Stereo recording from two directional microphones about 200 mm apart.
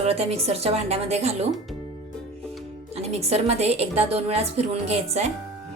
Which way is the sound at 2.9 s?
30° right (ahead or behind).